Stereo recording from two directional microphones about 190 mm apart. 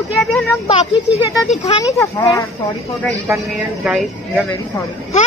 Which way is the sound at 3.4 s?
Centre (ahead or behind).